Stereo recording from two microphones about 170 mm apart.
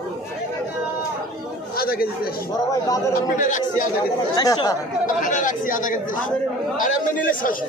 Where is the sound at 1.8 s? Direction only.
60° left (ahead or behind).